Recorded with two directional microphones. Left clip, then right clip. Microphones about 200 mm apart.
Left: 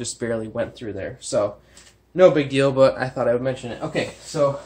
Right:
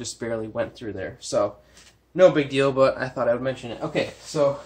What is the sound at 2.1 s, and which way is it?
A man's voice, 20° left (ahead or behind).